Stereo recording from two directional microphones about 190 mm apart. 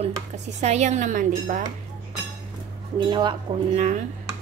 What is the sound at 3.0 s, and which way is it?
Speech, 25° right (ahead or behind).